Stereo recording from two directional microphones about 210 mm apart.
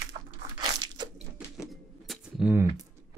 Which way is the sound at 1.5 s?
Centre (ahead or behind).